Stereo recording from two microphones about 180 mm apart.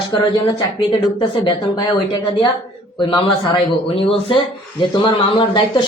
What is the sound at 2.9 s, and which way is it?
A man's voice, 25° left (ahead or behind).